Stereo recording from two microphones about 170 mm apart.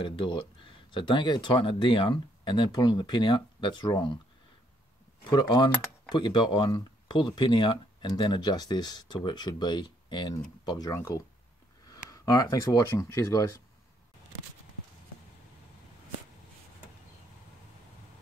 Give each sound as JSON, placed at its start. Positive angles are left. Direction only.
{"t": 0.0, "sound": "speech", "side_deg": 30}
{"t": 5.3, "sound": "speech", "side_deg": 25}